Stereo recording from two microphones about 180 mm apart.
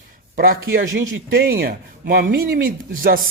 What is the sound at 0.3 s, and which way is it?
Speech, 55° right (ahead or behind).